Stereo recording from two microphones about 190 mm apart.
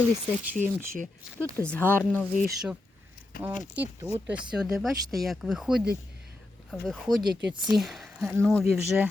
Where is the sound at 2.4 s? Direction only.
5° right (ahead or behind).